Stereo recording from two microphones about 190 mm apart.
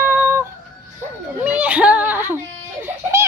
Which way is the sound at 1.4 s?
10° right (ahead or behind).